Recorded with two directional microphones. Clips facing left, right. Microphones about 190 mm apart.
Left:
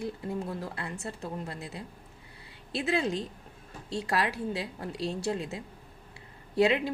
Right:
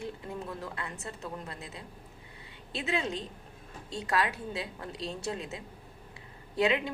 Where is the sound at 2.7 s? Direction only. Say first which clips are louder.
Left 4 dB; 35° left (ahead or behind).